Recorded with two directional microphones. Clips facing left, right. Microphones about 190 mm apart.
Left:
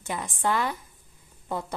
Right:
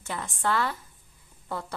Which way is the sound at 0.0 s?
15° left (ahead or behind).